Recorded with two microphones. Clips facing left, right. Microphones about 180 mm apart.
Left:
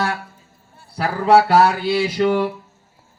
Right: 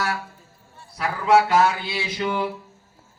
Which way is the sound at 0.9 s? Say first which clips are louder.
Left 4 dB; 35° left (ahead or behind).